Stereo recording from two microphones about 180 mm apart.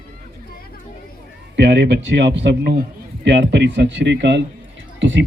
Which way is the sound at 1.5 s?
70° right (ahead or behind).